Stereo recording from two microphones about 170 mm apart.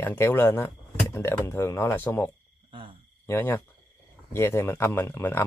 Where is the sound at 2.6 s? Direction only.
30° right (ahead or behind).